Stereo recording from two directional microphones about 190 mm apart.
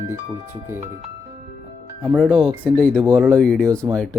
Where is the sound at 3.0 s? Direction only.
15° right (ahead or behind).